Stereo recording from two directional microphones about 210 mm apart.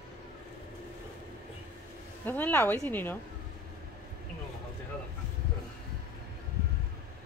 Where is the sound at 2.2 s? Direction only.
10° left (ahead or behind).